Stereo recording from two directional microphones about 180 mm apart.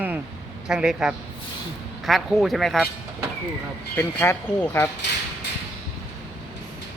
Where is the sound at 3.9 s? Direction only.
10° left (ahead or behind).